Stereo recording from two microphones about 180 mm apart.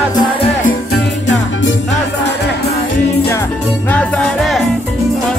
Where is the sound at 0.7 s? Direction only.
75° left (ahead or behind).